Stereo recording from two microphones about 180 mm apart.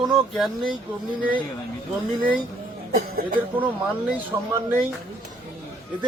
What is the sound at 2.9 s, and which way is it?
Speech, 50° right (ahead or behind).